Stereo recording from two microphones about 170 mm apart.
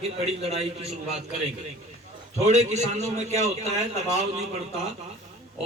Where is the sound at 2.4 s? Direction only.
40° right (ahead or behind).